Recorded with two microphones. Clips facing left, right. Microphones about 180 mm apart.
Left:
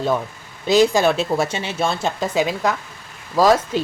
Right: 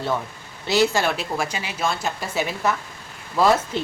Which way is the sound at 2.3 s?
15° left (ahead or behind).